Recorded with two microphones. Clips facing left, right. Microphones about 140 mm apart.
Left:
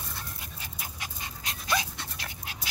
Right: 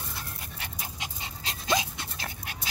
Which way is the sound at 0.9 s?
25° right (ahead or behind).